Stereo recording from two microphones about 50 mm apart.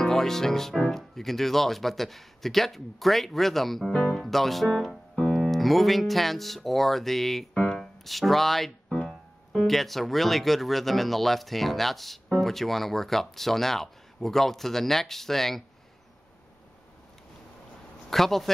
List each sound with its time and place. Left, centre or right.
0.0 s speech: centre
7.5 s keyboard: centre
8.0 s speech: centre
18.1 s speech: centre